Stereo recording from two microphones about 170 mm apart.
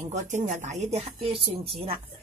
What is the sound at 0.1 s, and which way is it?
A woman's voice, 45° right (ahead or behind).